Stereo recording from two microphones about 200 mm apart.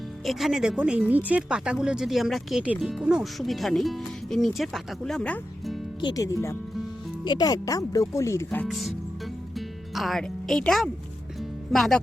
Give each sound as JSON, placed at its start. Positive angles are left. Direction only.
{"t": 0.3, "sound": "speech", "side_deg": 0}
{"t": 6.0, "sound": "speech", "side_deg": 20}
{"t": 8.4, "sound": "speech", "side_deg": 0}
{"t": 9.6, "sound": "music", "side_deg": 0}